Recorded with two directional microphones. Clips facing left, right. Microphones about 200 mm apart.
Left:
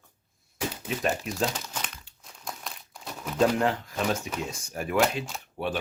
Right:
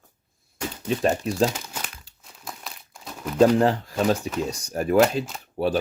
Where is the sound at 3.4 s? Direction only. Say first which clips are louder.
Right 6 dB; 35° right (ahead or behind).